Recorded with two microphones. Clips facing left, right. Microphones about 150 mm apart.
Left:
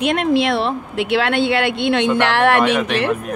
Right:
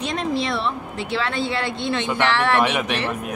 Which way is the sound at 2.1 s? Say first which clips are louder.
Left 5 dB; 60° left (ahead or behind).